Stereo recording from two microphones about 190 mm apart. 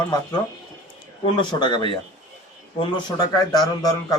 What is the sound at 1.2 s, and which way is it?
Speech, 25° left (ahead or behind).